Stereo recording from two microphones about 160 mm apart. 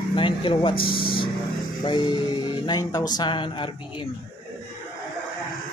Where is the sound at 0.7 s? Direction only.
65° left (ahead or behind).